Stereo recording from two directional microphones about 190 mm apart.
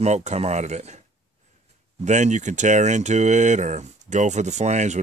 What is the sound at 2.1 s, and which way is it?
Speech, 40° right (ahead or behind).